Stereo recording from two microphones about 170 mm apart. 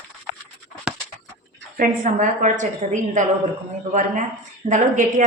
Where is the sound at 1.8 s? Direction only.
50° right (ahead or behind).